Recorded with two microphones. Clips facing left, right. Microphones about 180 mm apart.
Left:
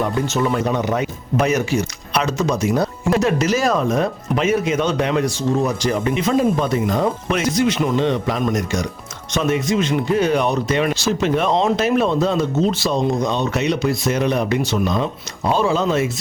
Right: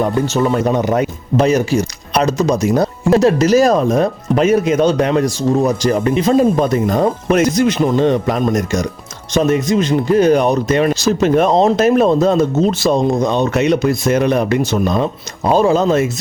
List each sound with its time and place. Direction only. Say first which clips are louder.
0.0 s speech: right 4 dB; 35° right (ahead or behind)